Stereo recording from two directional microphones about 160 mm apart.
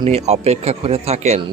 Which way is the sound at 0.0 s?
40° right (ahead or behind).